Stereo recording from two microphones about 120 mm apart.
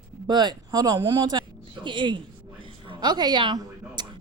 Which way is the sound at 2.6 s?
40° right (ahead or behind).